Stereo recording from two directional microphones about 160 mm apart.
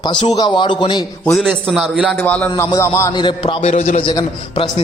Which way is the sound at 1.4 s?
Centre (ahead or behind).